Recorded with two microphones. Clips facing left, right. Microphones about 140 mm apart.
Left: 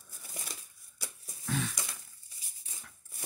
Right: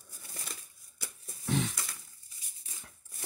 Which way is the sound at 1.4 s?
20° right (ahead or behind).